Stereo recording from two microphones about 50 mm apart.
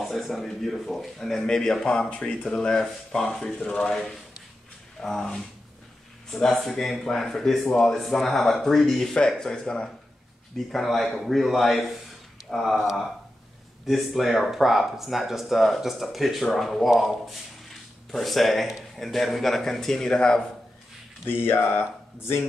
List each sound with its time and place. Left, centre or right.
0.0 s speech: centre
3.6 s speech: centre
5.0 s speech: centre
10.7 s speech: centre
21.3 s speech: left